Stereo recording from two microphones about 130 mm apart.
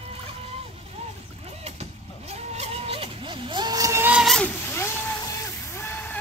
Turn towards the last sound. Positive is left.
turn(degrees=15)  # may be behind; listen again after turning